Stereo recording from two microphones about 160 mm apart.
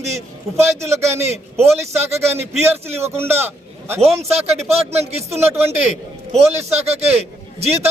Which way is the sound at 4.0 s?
40° right (ahead or behind).